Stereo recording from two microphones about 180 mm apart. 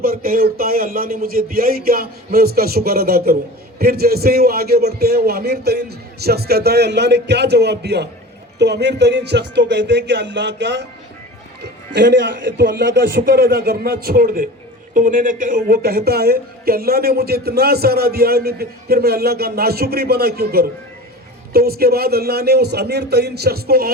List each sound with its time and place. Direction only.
0.0 s speech: 55° right (ahead or behind)